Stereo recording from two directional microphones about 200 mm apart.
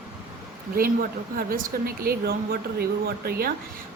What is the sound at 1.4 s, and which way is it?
Speech, 45° right (ahead or behind).